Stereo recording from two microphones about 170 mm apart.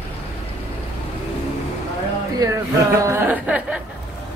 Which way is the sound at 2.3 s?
20° right (ahead or behind).